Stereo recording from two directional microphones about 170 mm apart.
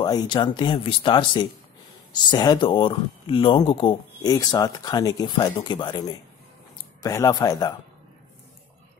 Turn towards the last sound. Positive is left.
turn(degrees=20)  # may be behind; listen again after turning